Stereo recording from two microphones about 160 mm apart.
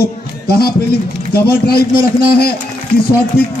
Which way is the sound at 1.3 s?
75° left (ahead or behind).